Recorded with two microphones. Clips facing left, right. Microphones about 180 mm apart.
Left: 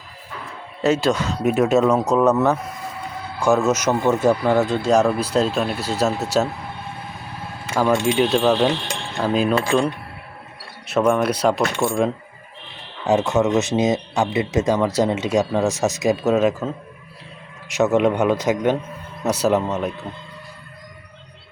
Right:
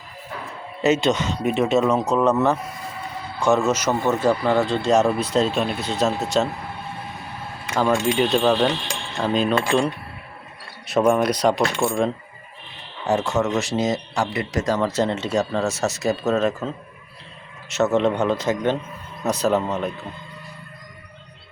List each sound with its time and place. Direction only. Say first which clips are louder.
0.8 s speech: even; 5° right (ahead or behind)
3.7 s speech: left 2 dB; 10° left (ahead or behind)
8.0 s speech: left 1 dB; centre (ahead or behind)
13.1 s speech: left 3 dB; 20° left (ahead or behind)